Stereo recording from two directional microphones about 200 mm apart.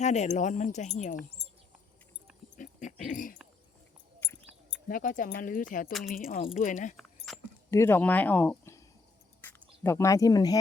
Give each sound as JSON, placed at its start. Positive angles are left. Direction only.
{"t": 0.0, "sound": "speech", "side_deg": 35}
{"t": 2.6, "sound": "dog", "side_deg": 40}
{"t": 4.2, "sound": "a sound", "side_deg": 10}
{"t": 4.9, "sound": "speech", "side_deg": 40}
{"t": 5.9, "sound": "speech", "side_deg": 0}
{"t": 6.1, "sound": "speech", "side_deg": 45}
{"t": 7.3, "sound": "a sound", "side_deg": 0}
{"t": 7.7, "sound": "speech", "side_deg": 10}